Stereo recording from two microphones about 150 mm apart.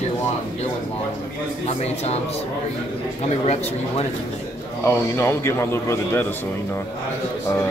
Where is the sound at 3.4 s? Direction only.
45° left (ahead or behind).